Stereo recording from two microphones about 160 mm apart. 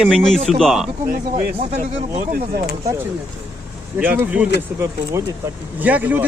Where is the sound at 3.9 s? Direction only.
10° right (ahead or behind).